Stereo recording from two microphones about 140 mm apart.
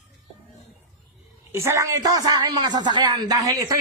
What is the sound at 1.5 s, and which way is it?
A man's voice, 20° right (ahead or behind).